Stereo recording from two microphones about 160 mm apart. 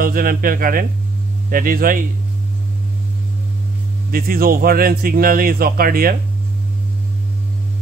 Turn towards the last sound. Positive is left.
turn(degrees=-65)  # may be behind; listen again after turning